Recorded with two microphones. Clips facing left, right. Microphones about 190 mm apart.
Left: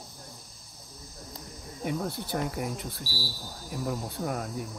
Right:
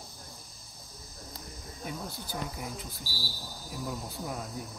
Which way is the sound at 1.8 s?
65° left (ahead or behind).